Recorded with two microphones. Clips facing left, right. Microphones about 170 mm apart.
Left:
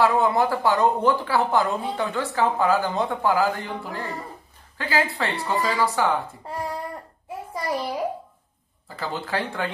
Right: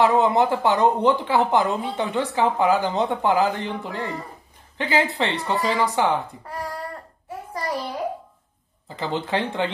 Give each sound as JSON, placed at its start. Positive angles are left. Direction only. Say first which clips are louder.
{"t": 0.0, "sound": "speech", "louder": "right 2 dB", "side_deg": -20}
{"t": 6.4, "sound": "a sound", "louder": "left 1 dB", "side_deg": 25}
{"t": 8.8, "sound": "speech", "louder": "right 4 dB", "side_deg": -20}